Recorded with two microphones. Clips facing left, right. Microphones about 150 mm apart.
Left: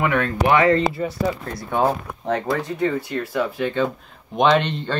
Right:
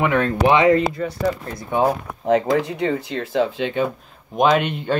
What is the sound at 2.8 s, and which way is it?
Speech, 25° right (ahead or behind).